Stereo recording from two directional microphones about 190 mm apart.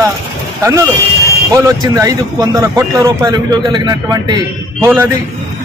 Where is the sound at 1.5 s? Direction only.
15° right (ahead or behind).